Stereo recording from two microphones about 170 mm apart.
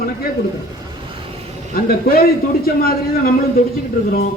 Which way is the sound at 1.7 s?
60° left (ahead or behind).